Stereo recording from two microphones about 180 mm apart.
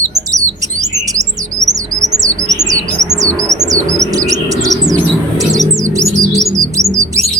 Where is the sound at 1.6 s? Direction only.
20° right (ahead or behind).